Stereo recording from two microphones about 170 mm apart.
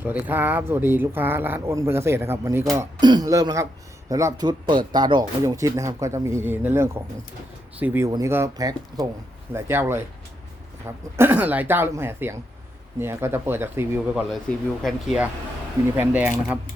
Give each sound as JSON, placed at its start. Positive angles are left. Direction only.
{"t": 0.0, "sound": "speech", "side_deg": -10}
{"t": 14.8, "sound": "speech", "side_deg": 0}
{"t": 16.0, "sound": "speech", "side_deg": -10}